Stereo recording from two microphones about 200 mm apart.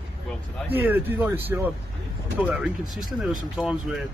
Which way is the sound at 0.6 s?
10° right (ahead or behind).